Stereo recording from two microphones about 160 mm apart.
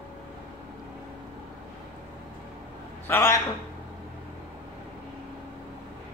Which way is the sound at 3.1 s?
15° left (ahead or behind).